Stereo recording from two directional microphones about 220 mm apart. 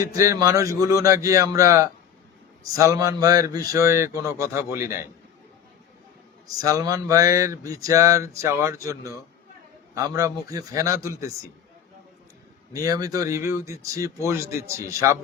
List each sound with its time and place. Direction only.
0.0 s speech: 15° right (ahead or behind)
6.8 s speech: 15° right (ahead or behind)
12.7 s speech: 15° right (ahead or behind)